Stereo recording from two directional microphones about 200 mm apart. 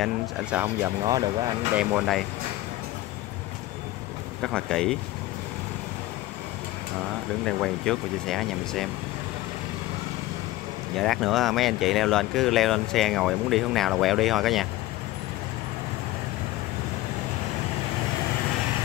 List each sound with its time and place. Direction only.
0.0 s speech: 5° right (ahead or behind)
1.0 s speech: 20° right (ahead or behind)
1.8 s speech: 5° right (ahead or behind)
4.4 s speech: centre (ahead or behind)
7.4 s speech: 5° left (ahead or behind)
11.0 s speech: centre (ahead or behind)